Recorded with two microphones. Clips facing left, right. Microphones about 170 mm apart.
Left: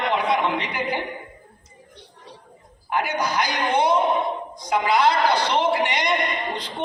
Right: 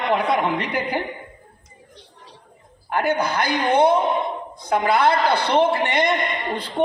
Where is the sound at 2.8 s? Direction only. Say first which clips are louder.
Right 3 dB; 55° right (ahead or behind).